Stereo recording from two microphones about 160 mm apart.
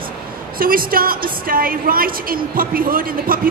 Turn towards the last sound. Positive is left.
turn(degrees=-65)  # may be behind; listen again after turning